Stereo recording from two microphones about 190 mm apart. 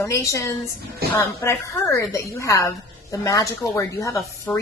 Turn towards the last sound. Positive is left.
turn(degrees=15)  # may be behind; listen again after turning